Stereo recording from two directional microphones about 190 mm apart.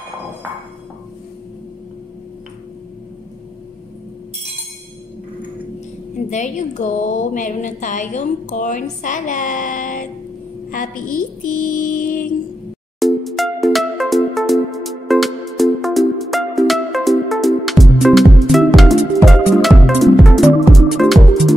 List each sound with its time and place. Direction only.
6.3 s a woman's voice: 40° left (ahead or behind)
10.7 s mantra: 45° left (ahead or behind)
13.0 s music: centre (ahead or behind)